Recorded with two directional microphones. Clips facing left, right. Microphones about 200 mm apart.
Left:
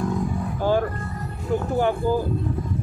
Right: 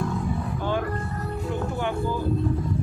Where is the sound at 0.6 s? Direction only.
40° left (ahead or behind).